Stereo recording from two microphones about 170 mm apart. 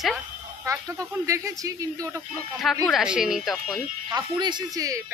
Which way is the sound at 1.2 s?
20° right (ahead or behind).